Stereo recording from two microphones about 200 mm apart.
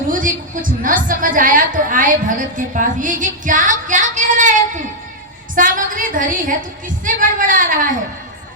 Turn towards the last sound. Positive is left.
turn(degrees=-40)  # may be behind; listen again after turning